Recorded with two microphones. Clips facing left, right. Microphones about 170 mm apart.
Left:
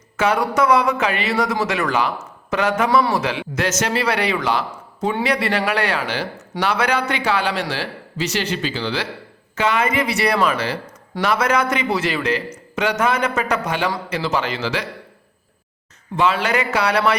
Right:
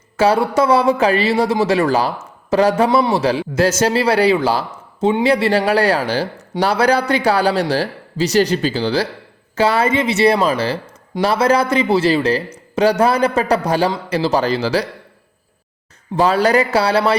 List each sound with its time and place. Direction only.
0.2 s speech: 30° right (ahead or behind)
16.1 s speech: 40° right (ahead or behind)